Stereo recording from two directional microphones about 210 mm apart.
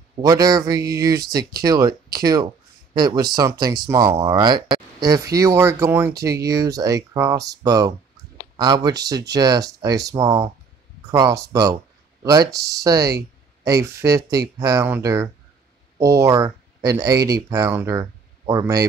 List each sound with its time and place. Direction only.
0.2 s speech: 20° right (ahead or behind)